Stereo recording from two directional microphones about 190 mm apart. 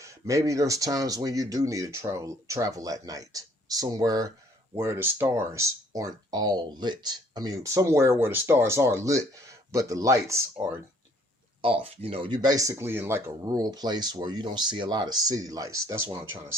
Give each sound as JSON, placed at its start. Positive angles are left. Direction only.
{"t": 0.0, "sound": "speech", "side_deg": -15}
{"t": 11.6, "sound": "speech", "side_deg": -30}